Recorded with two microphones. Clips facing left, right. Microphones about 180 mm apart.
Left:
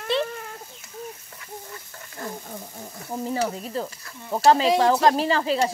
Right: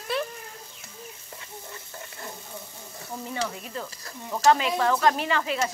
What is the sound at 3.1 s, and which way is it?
Speech, 35° left (ahead or behind).